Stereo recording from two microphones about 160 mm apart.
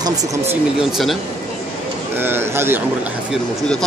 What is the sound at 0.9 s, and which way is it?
Speech, centre (ahead or behind).